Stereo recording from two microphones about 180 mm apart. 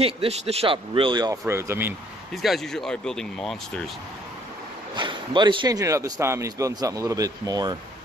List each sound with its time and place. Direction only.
0.0 s speech: 35° right (ahead or behind); by 2.0 s 10° right (ahead or behind)
2.4 s speech: centre (ahead or behind)
4.9 s speech: 25° right (ahead or behind)